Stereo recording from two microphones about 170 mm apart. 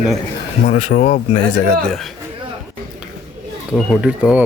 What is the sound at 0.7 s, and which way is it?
Speech, 45° left (ahead or behind).